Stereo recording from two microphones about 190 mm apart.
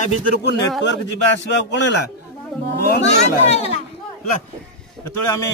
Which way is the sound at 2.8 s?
55° left (ahead or behind).